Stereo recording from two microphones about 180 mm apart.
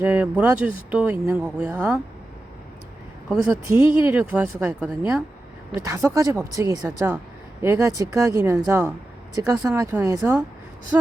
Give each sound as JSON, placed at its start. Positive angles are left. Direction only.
{"t": 0.0, "sound": "speech", "side_deg": -10}
{"t": 3.4, "sound": "speech", "side_deg": -15}